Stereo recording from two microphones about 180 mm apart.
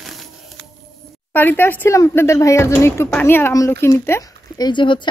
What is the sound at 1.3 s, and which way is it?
Speech, 10° left (ahead or behind).